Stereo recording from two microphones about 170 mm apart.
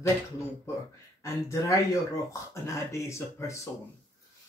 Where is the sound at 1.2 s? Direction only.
15° left (ahead or behind).